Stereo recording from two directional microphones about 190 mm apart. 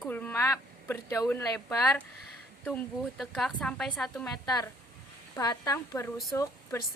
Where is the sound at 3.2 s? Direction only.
Centre (ahead or behind).